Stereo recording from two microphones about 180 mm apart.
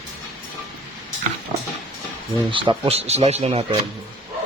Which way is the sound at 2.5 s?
30° right (ahead or behind).